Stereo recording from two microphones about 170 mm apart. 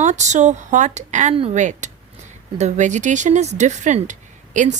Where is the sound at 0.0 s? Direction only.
45° right (ahead or behind).